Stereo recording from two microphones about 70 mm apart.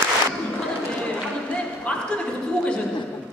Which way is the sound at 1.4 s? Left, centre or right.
Centre.